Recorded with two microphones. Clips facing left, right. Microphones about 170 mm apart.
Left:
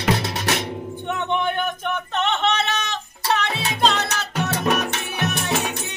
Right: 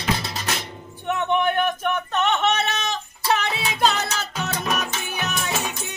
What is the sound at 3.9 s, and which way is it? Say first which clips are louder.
Music: left 2 dB; 65° left (ahead or behind).